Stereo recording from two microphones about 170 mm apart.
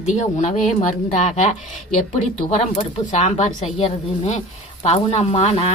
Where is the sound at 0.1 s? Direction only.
45° left (ahead or behind).